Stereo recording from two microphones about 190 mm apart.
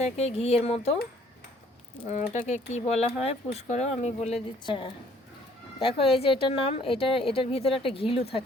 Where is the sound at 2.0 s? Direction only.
35° left (ahead or behind).